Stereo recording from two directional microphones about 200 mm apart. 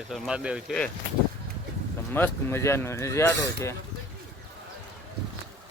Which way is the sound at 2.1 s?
10° left (ahead or behind).